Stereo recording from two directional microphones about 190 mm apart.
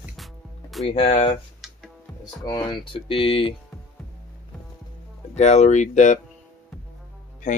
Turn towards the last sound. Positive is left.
turn(degrees=40)  # may be behind; listen again after turning